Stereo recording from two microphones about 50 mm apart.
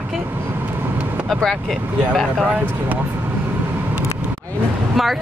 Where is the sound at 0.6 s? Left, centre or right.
Right.